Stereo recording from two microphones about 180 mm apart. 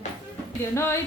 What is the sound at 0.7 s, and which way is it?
Speech, 15° left (ahead or behind).